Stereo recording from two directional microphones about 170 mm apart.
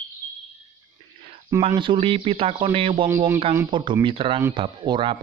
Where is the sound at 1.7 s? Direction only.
30° right (ahead or behind).